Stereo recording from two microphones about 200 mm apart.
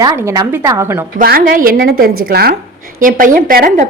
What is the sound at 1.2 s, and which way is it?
A woman's voice, 45° right (ahead or behind).